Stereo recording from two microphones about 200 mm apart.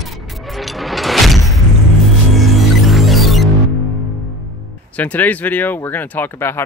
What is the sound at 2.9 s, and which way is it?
Music, centre (ahead or behind).